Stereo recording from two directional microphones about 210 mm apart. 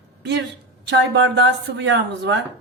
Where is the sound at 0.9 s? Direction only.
55° right (ahead or behind).